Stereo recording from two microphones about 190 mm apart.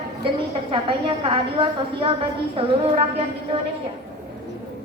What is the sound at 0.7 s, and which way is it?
A woman's voice, 30° right (ahead or behind).